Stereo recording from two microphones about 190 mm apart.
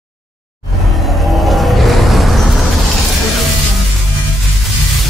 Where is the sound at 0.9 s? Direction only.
Centre (ahead or behind).